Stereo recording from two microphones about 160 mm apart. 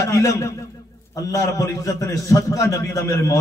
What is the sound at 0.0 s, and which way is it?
A man's voice, 20° left (ahead or behind).